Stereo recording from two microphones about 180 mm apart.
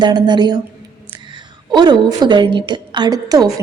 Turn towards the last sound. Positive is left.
turn(degrees=-20)  # may be behind; listen again after turning